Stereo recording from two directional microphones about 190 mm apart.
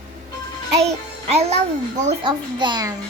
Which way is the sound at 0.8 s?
35° right (ahead or behind).